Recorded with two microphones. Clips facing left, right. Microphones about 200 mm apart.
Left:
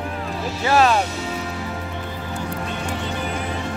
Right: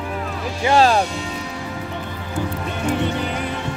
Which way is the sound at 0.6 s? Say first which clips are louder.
Right 2 dB; 30° right (ahead or behind).